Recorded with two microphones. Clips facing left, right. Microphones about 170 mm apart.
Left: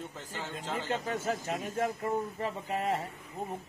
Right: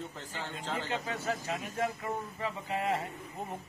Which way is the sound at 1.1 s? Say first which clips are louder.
Left 2 dB; 45° left (ahead or behind).